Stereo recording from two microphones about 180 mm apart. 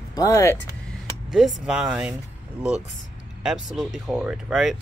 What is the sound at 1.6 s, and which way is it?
Speech, 5° right (ahead or behind).